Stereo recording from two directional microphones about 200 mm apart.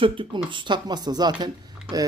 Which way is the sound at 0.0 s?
25° right (ahead or behind).